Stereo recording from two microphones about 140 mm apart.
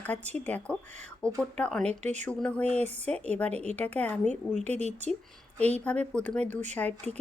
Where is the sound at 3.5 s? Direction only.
50° right (ahead or behind).